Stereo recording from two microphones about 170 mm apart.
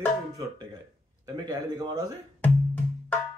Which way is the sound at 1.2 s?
20° right (ahead or behind).